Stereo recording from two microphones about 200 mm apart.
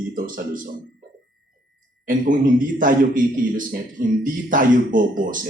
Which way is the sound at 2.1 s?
40° right (ahead or behind).